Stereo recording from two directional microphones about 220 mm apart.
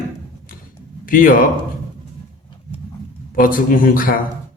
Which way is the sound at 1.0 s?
40° left (ahead or behind).